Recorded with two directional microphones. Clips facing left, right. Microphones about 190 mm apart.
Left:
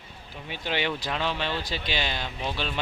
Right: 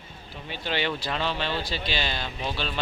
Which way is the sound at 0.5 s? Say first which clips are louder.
Even; 15° left (ahead or behind).